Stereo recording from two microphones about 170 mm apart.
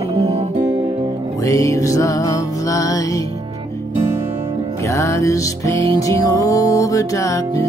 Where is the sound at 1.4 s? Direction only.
20° left (ahead or behind).